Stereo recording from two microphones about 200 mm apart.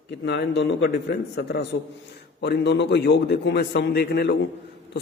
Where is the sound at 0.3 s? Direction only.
60° left (ahead or behind).